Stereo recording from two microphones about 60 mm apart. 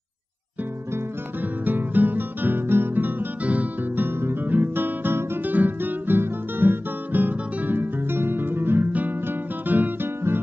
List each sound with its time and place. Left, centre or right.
1.6 s music: right
3.4 s guitar: right